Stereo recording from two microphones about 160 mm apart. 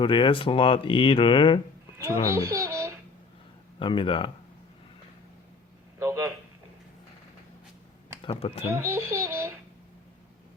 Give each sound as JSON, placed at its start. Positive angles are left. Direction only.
{"t": 0.0, "sound": "speech", "side_deg": 30}
{"t": 2.3, "sound": "a child's voice", "side_deg": -20}
{"t": 3.8, "sound": "speech", "side_deg": 30}
{"t": 6.0, "sound": "a sound", "side_deg": -15}
{"t": 8.2, "sound": "speech", "side_deg": 35}
{"t": 8.7, "sound": "a child's voice", "side_deg": -15}